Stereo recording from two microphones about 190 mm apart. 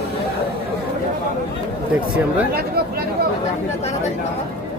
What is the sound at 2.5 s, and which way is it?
Chatter, 55° right (ahead or behind).